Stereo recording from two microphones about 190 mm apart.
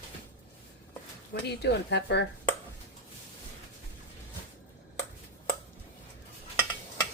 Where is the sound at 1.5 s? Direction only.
60° left (ahead or behind).